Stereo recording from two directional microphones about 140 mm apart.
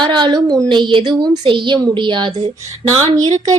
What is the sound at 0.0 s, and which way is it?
A woman's voice, 35° right (ahead or behind).